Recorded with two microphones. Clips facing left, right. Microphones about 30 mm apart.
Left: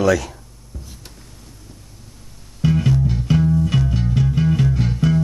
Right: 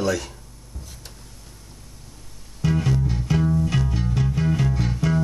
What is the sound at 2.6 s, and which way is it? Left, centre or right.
Music, centre.